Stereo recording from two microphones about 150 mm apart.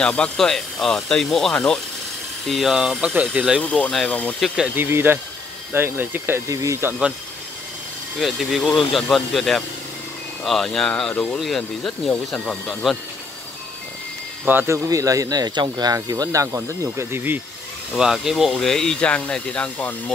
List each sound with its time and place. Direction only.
0.0 s speech: 5° left (ahead or behind)
3.6 s speech: 10° left (ahead or behind)
4.6 s speech: 15° right (ahead or behind)
8.2 s speech: centre (ahead or behind)
14.4 s speech: 10° right (ahead or behind)
17.9 s speech: 5° right (ahead or behind)